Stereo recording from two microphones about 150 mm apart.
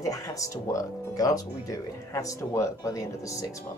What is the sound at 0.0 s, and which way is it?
Speech, 20° left (ahead or behind).